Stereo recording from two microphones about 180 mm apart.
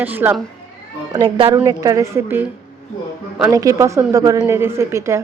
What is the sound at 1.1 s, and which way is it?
A woman's voice, 20° right (ahead or behind).